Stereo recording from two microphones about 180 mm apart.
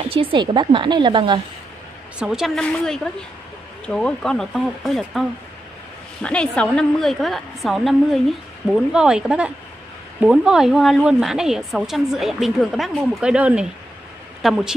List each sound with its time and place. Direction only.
0.1 s speech: 30° right (ahead or behind)
2.1 s a woman's voice: 5° right (ahead or behind)
6.2 s a woman's voice: 5° left (ahead or behind)